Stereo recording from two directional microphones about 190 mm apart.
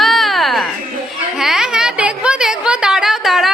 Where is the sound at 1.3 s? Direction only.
Centre (ahead or behind).